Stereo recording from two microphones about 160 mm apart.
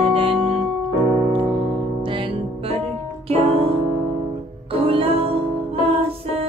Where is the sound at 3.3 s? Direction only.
35° right (ahead or behind).